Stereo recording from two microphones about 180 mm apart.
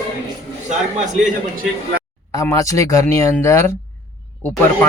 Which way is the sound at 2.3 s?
20° left (ahead or behind).